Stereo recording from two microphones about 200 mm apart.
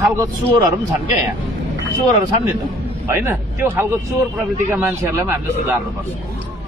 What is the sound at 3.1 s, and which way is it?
A man's voice, 10° right (ahead or behind).